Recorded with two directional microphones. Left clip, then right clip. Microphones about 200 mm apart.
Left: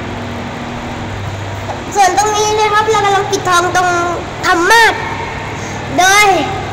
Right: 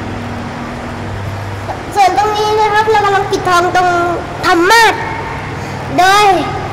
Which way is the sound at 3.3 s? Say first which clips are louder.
Right 1 dB; 15° right (ahead or behind).